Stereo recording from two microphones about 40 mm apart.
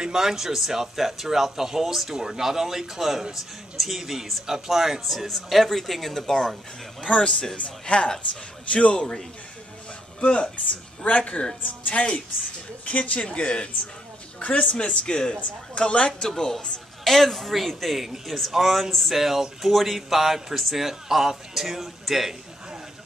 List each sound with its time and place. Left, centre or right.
0.0 s speech: centre
7.1 s a woman's voice: left
10.2 s a woman's voice: left
11.1 s a woman's voice: left
14.7 s a woman's voice: left; by 18.0 s centre
18.0 s speech: centre